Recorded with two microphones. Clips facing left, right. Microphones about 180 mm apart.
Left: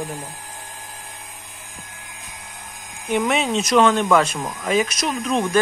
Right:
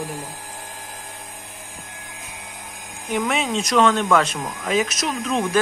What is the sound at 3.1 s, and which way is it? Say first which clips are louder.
Speech: left 2 dB; centre (ahead or behind).